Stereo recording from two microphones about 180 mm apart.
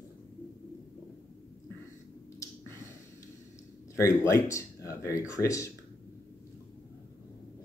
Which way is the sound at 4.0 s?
15° left (ahead or behind).